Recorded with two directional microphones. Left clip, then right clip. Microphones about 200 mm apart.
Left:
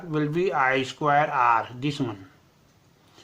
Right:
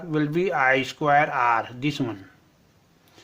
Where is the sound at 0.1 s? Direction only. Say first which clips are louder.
Right 1 dB; 30° right (ahead or behind).